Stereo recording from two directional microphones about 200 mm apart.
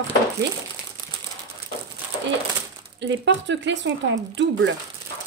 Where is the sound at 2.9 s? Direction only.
65° right (ahead or behind).